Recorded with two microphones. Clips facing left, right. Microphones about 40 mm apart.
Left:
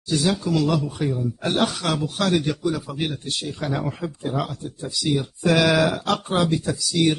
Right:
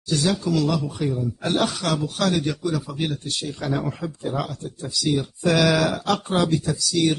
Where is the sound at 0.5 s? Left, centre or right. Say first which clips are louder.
Left 1 dB; centre.